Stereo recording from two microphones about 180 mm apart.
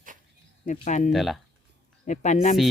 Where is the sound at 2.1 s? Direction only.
40° left (ahead or behind).